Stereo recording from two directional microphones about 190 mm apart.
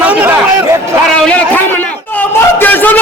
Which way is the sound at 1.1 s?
5° left (ahead or behind).